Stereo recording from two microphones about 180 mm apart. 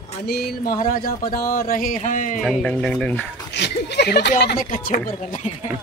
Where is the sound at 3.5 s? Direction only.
70° left (ahead or behind).